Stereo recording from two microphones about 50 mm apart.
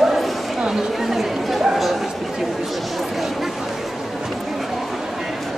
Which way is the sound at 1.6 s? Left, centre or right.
Centre.